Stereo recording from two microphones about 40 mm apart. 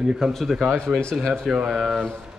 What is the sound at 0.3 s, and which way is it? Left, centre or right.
Speech, centre.